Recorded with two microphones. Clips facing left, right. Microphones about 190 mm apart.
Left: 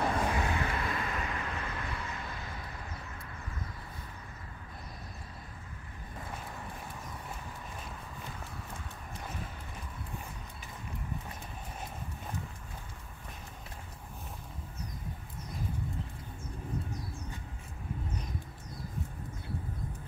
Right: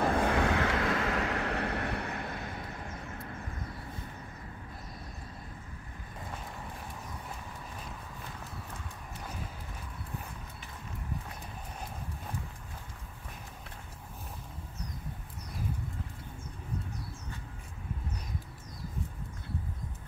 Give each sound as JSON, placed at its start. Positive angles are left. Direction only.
{"t": 0.2, "sound": "vehicle", "side_deg": -65}